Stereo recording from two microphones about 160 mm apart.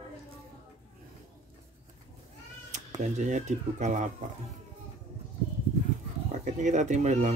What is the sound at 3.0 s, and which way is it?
Speech, 50° right (ahead or behind).